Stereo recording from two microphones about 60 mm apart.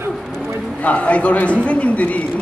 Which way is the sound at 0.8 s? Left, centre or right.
Left.